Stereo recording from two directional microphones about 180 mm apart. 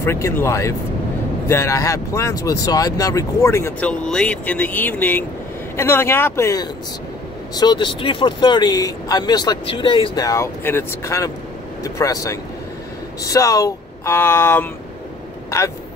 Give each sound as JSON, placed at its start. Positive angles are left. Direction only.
{"t": 0.0, "sound": "speech", "side_deg": 15}